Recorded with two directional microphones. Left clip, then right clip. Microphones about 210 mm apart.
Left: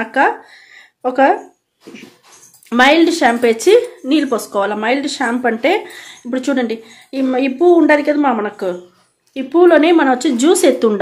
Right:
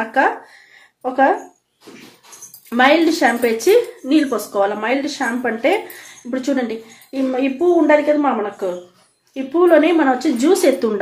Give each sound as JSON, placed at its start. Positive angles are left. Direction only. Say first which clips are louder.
{"t": 0.0, "sound": "a sound", "louder": "left 2 dB", "side_deg": 40}
{"t": 1.0, "sound": "speech", "louder": "left 3 dB", "side_deg": 45}
{"t": 2.7, "sound": "speech", "louder": "left 3 dB", "side_deg": 40}